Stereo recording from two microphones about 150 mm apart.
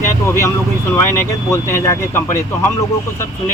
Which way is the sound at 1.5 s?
20° left (ahead or behind).